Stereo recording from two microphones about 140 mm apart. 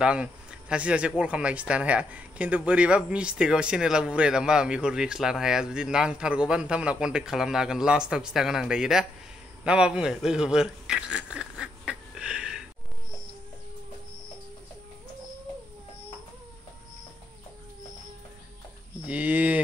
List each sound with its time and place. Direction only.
0.0 s speech: 5° right (ahead or behind)
19.0 s speech: 10° right (ahead or behind)